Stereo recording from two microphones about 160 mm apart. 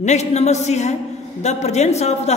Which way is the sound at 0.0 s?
45° left (ahead or behind).